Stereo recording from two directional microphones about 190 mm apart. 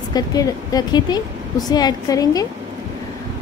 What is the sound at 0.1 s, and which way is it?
Speech, 20° left (ahead or behind).